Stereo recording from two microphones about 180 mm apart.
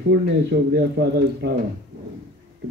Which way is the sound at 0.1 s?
70° right (ahead or behind).